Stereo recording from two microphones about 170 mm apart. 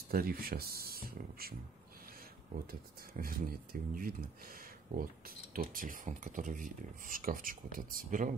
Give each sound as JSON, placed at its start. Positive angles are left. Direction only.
{"t": 0.1, "sound": "speech", "side_deg": -60}
{"t": 2.6, "sound": "speech", "side_deg": -60}